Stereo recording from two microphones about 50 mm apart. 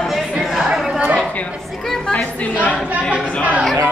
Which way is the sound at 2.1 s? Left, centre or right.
Left.